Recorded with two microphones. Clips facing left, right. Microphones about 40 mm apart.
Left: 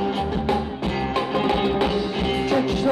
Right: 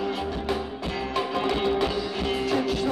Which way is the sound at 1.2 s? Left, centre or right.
Centre.